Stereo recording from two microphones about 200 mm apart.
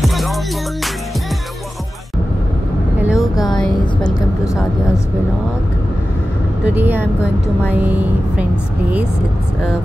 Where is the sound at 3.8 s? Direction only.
20° left (ahead or behind).